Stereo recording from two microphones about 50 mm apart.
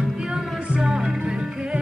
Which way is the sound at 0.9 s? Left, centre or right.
Centre.